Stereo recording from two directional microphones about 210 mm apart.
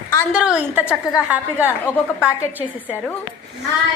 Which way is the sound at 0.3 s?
5° right (ahead or behind).